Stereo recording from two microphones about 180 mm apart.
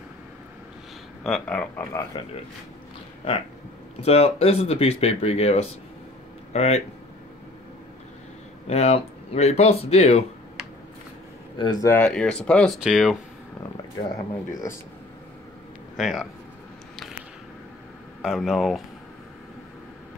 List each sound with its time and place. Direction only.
1.2 s speech: 5° left (ahead or behind)
2.1 s speech: 25° left (ahead or behind)
4.0 s speech: 35° left (ahead or behind)
8.6 s speech: 35° left (ahead or behind)
11.5 s speech: 25° left (ahead or behind)
11.9 s speech: 5° left (ahead or behind)
14.5 s speech: 15° left (ahead or behind)
16.0 s speech: centre (ahead or behind)
18.2 s speech: centre (ahead or behind)